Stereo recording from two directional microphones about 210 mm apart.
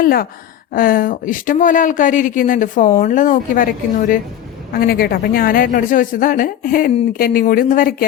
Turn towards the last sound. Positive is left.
turn(degrees=40)  # may be behind; listen again after turning